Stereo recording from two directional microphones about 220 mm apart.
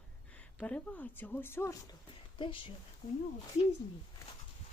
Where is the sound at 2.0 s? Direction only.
25° left (ahead or behind).